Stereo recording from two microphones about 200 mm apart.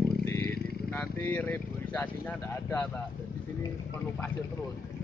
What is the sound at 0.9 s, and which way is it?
Vehicle, 10° left (ahead or behind).